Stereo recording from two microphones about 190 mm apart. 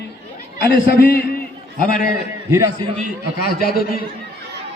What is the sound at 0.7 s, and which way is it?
Speech, 65° left (ahead or behind).